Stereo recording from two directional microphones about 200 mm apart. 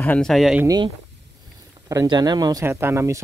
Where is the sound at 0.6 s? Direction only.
20° right (ahead or behind).